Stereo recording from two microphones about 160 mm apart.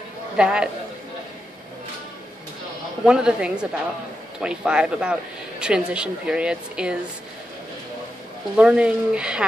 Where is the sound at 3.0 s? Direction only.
5° right (ahead or behind).